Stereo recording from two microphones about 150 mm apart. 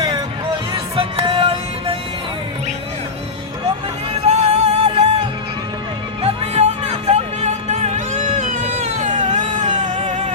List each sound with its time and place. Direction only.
0.7 s music: 35° right (ahead or behind)
4.1 s music: 40° right (ahead or behind)
6.2 s music: 45° right (ahead or behind)